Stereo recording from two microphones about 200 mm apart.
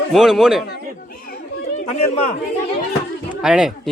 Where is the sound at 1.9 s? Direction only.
30° left (ahead or behind).